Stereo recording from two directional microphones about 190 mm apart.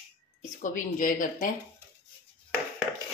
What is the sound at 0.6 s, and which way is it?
Speech, 45° left (ahead or behind).